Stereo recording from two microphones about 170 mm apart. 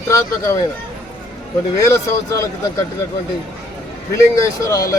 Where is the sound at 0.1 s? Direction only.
20° left (ahead or behind).